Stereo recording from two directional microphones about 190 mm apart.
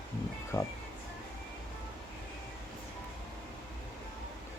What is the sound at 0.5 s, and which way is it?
Speech, 15° left (ahead or behind).